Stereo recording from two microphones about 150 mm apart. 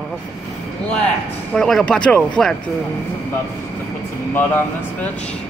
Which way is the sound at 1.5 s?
5° left (ahead or behind).